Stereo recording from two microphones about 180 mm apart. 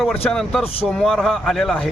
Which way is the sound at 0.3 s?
5° left (ahead or behind).